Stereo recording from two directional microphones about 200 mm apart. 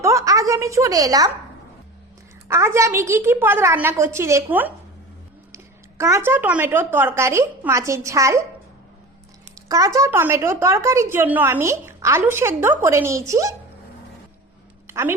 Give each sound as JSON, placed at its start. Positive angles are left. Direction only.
{"t": 0.0, "sound": "speech", "side_deg": -15}
{"t": 2.5, "sound": "speech", "side_deg": -15}
{"t": 6.0, "sound": "speech", "side_deg": -15}
{"t": 9.6, "sound": "speech", "side_deg": -15}
{"t": 14.8, "sound": "a sound", "side_deg": -10}